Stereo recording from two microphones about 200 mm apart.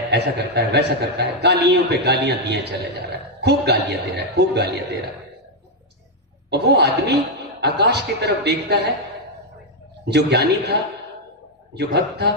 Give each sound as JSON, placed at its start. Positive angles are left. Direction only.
{"t": 0.1, "sound": "a man's voice", "side_deg": -55}
{"t": 6.5, "sound": "a man's voice", "side_deg": -55}
{"t": 10.0, "sound": "a man's voice", "side_deg": -55}